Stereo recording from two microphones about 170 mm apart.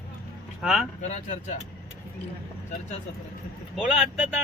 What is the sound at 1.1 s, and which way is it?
Speech, 45° left (ahead or behind).